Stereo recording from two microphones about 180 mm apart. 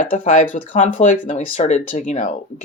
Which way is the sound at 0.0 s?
45° left (ahead or behind).